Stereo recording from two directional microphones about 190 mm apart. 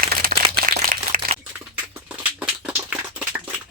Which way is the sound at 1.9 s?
10° right (ahead or behind).